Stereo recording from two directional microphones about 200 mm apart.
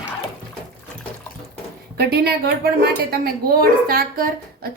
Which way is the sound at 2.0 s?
50° right (ahead or behind).